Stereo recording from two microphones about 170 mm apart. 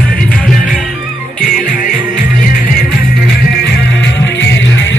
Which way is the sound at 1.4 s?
50° left (ahead or behind).